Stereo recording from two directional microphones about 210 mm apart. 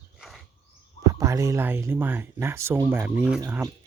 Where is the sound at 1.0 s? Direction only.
15° right (ahead or behind).